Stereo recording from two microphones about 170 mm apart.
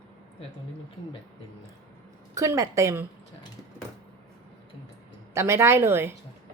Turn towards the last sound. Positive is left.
turn(degrees=-15)  # may be behind; listen again after turning